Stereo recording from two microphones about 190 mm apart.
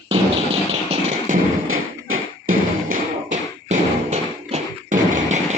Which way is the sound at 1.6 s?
90° right.